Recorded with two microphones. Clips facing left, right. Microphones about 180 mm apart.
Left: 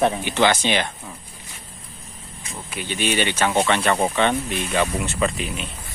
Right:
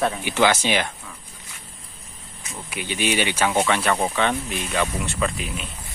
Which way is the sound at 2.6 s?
10° right (ahead or behind).